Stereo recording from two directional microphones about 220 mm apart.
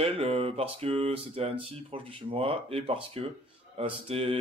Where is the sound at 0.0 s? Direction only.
25° right (ahead or behind).